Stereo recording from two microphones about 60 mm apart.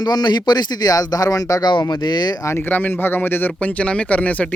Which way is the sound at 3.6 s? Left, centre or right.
Left.